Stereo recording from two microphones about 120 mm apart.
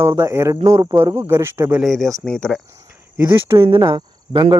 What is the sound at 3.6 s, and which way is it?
Speech, 40° right (ahead or behind).